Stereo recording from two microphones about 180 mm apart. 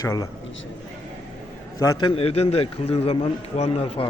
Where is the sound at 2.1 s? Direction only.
30° left (ahead or behind).